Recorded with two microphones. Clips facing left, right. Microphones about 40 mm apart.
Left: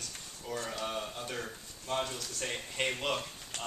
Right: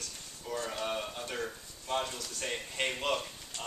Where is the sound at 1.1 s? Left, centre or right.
Centre.